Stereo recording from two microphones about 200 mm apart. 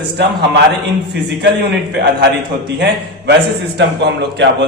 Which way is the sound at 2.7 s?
55° right (ahead or behind).